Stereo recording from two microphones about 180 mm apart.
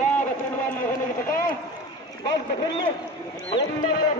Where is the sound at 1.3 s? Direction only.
55° left (ahead or behind).